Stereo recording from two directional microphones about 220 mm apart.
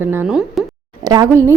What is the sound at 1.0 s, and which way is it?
Speech, 15° right (ahead or behind).